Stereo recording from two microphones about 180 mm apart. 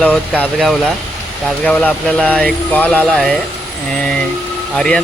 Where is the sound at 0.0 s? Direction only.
5° left (ahead or behind).